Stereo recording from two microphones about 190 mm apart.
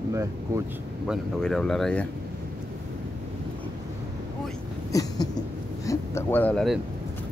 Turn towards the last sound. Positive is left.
turn(degrees=5)  # may be behind; listen again after turning